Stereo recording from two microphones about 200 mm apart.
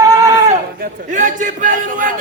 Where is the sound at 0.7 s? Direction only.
40° right (ahead or behind).